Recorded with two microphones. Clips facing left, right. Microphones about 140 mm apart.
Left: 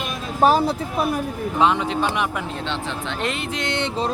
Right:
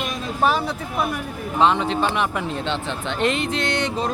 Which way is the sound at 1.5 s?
10° left (ahead or behind).